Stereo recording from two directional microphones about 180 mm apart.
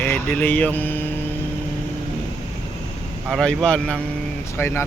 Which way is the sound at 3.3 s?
5° left (ahead or behind).